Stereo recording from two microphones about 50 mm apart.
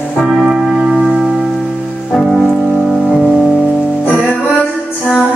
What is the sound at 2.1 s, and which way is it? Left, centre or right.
Music, centre.